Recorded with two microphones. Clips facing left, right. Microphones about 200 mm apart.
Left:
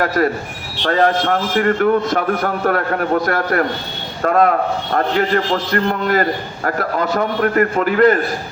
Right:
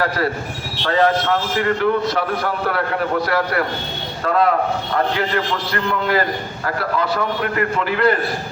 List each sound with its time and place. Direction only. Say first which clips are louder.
0.9 s a man's voice: left 1 dB; 50° left (ahead or behind)